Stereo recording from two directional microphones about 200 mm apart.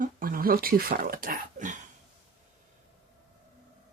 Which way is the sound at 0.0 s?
45° right (ahead or behind).